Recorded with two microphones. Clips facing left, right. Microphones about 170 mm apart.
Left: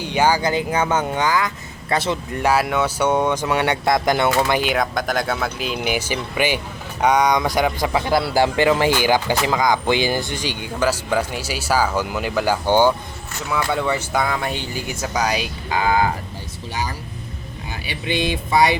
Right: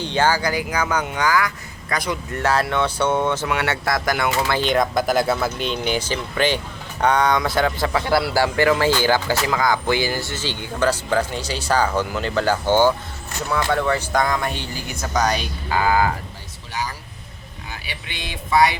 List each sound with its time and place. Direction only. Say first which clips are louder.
0.0 s speech: left 1 dB; 10° left (ahead or behind)
2.4 s speech: left 1 dB; 10° left (ahead or behind)
17.7 s speech: left 10 dB; 25° left (ahead or behind)